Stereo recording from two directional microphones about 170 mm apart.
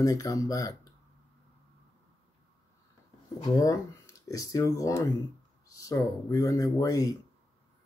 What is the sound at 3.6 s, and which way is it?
Speech, 20° left (ahead or behind).